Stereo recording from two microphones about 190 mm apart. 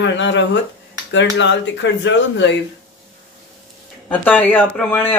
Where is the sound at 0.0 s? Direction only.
70° left (ahead or behind).